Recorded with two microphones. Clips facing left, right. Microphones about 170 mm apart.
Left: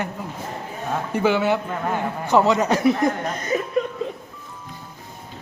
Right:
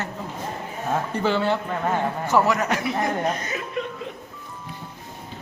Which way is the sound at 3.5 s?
35° left (ahead or behind).